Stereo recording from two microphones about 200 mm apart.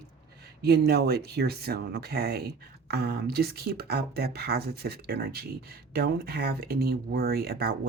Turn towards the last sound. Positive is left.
turn(degrees=-50)  # may be behind; listen again after turning